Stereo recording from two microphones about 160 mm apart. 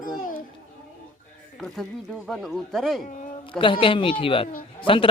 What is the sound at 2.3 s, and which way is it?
Speech, centre (ahead or behind).